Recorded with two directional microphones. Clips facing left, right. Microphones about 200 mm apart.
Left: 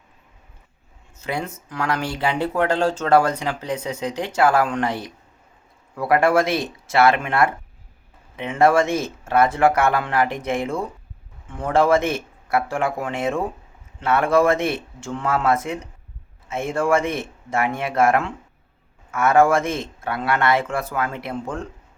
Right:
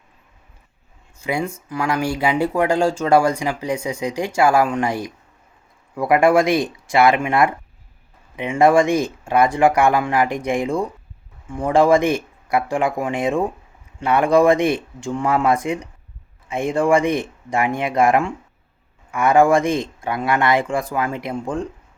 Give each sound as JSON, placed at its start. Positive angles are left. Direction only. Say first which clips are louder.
{"t": 1.2, "sound": "speech", "louder": "right 4 dB", "side_deg": -10}